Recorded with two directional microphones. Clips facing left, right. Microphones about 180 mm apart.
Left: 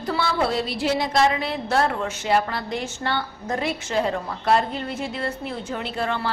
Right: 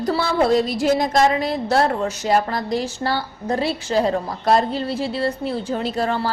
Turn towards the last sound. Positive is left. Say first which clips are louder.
# right 5 dB
turn(degrees=-35)  # may be behind; listen again after turning